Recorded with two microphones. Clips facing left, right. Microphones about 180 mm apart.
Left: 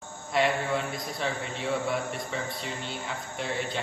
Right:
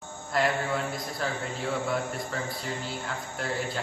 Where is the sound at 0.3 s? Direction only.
Centre (ahead or behind).